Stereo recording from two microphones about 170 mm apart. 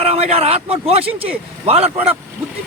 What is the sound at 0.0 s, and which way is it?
A man's voice, 35° right (ahead or behind).